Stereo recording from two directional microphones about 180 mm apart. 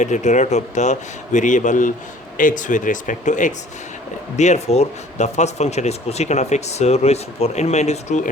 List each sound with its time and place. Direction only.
0.0 s speech: 40° left (ahead or behind)